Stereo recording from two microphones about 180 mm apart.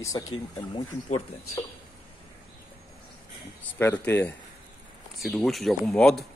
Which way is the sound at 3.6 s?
10° left (ahead or behind).